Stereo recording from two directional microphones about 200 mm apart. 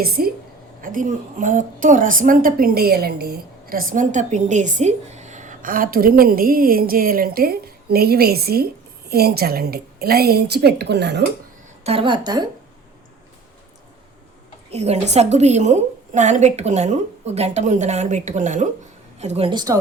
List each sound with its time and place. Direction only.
0.2 s a woman's voice: 50° right (ahead or behind)
11.8 s a woman's voice: 30° right (ahead or behind)
14.7 s a woman's voice: 30° right (ahead or behind)